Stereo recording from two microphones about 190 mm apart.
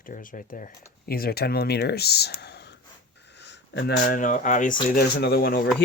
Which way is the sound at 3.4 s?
65° left (ahead or behind).